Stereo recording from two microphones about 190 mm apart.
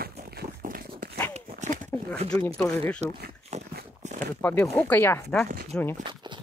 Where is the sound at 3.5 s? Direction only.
35° right (ahead or behind).